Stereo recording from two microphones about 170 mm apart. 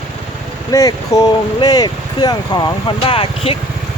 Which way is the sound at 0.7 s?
20° left (ahead or behind).